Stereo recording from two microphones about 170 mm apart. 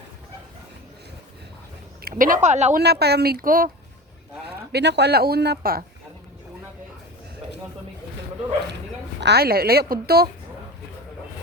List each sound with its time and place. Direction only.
2.0 s speech: 60° right (ahead or behind); by 2.7 s 45° right (ahead or behind)
2.7 s a woman's voice: 70° right (ahead or behind); by 3.7 s 55° right (ahead or behind)
4.4 s speech: 85° right
9.2 s a woman's voice: 70° right (ahead or behind)